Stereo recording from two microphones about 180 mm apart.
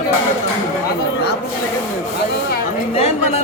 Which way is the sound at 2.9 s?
35° left (ahead or behind).